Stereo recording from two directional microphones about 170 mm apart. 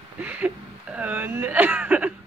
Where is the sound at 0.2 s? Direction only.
10° right (ahead or behind).